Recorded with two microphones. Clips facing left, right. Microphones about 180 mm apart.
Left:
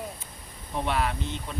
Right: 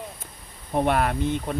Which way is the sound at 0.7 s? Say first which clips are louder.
Right 6 dB; 50° right (ahead or behind).